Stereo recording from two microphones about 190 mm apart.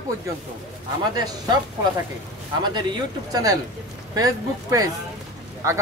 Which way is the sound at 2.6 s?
20° right (ahead or behind).